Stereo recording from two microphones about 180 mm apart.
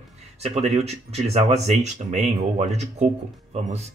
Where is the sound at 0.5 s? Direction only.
35° right (ahead or behind).